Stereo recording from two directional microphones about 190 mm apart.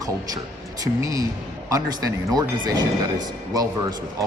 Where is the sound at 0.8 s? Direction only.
20° right (ahead or behind).